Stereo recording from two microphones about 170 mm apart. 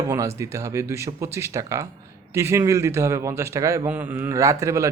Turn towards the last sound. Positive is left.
turn(degrees=-15)  # may be behind; listen again after turning